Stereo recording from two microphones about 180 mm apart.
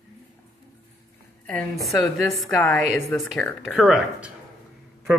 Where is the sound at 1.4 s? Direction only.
Centre (ahead or behind).